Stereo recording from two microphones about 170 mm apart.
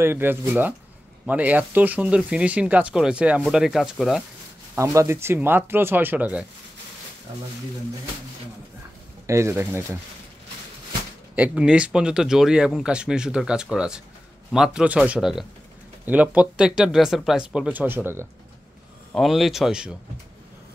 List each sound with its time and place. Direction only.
0.0 s speech: 10° right (ahead or behind)
4.7 s speech: 15° right (ahead or behind)
9.2 s speech: 15° right (ahead or behind)
11.3 s speech: 5° right (ahead or behind)
19.1 s speech: centre (ahead or behind)